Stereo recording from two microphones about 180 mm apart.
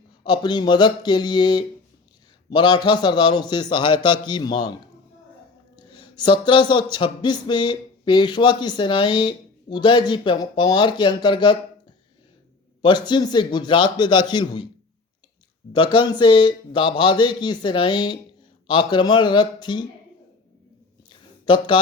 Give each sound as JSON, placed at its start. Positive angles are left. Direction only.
{"t": 0.3, "sound": "speech", "side_deg": 25}
{"t": 5.7, "sound": "a sound", "side_deg": 25}
{"t": 6.9, "sound": "speech", "side_deg": 25}
{"t": 12.8, "sound": "speech", "side_deg": 25}
{"t": 15.7, "sound": "speech", "side_deg": 25}
{"t": 21.1, "sound": "a sound", "side_deg": 25}